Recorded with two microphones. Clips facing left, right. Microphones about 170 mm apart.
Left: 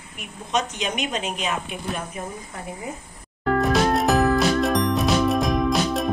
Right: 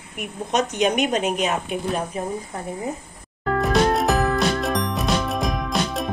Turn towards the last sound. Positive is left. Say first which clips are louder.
# left 3 dB
turn(degrees=0)  # may be behind; listen again after turning